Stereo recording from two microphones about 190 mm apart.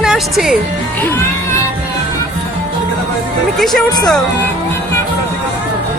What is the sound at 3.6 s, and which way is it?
Speech, centre (ahead or behind).